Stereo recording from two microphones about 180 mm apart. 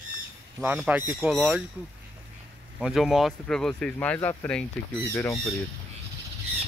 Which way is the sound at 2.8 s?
Centre (ahead or behind).